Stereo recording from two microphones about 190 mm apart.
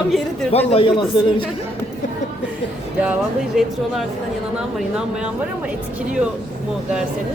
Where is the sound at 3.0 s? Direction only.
5° right (ahead or behind).